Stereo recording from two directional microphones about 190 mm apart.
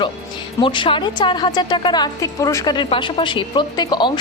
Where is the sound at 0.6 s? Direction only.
25° left (ahead or behind).